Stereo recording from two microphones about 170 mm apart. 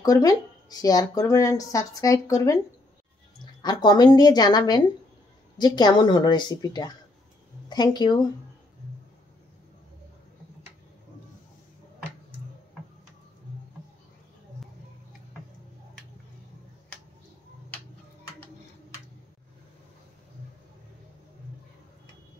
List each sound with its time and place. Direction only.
0.0 s speech: 20° left (ahead or behind)
3.6 s speech: 25° left (ahead or behind)